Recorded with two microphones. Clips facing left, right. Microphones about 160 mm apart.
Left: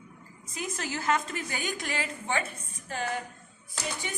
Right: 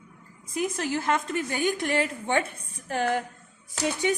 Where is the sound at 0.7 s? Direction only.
60° right (ahead or behind).